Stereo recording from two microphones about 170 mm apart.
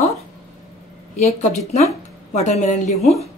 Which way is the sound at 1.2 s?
40° left (ahead or behind).